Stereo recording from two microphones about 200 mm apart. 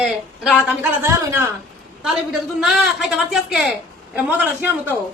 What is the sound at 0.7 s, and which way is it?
Speech, 10° right (ahead or behind).